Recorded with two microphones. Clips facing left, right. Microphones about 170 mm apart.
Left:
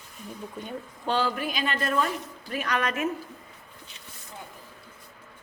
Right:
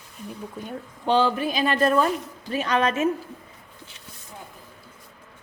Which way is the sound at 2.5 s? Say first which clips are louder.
Right 6 dB; 25° right (ahead or behind).